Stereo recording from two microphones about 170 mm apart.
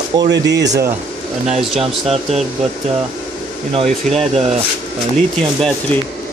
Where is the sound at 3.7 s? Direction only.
35° right (ahead or behind).